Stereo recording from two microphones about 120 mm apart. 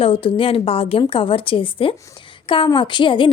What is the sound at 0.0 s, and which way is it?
Speech, 50° left (ahead or behind).